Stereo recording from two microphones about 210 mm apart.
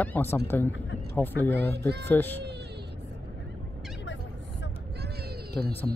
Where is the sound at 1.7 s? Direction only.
50° right (ahead or behind).